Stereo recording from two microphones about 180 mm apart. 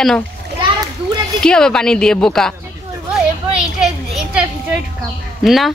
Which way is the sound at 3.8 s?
5° right (ahead or behind).